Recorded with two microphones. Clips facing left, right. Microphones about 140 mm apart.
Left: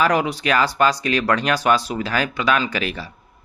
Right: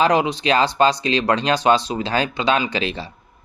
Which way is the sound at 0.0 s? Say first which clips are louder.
Right 2 dB; 20° right (ahead or behind).